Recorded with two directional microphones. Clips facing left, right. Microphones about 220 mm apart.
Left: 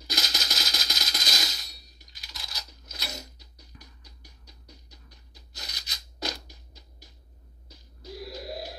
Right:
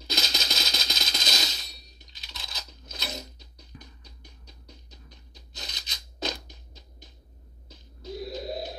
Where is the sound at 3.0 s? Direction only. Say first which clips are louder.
Right 3 dB; 20° right (ahead or behind).